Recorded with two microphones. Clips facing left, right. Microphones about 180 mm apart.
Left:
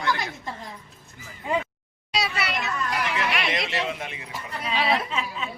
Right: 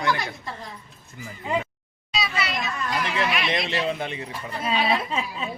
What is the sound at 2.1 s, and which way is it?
Children playing, 70° left (ahead or behind).